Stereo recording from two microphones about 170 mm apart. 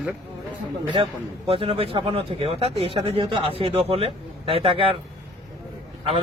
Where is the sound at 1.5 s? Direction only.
35° right (ahead or behind).